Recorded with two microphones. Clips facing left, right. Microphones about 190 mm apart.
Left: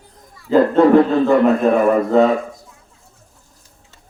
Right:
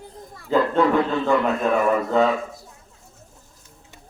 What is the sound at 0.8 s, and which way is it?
A man's voice, 45° left (ahead or behind).